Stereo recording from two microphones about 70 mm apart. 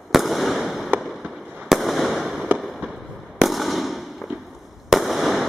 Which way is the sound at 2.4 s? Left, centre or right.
Centre.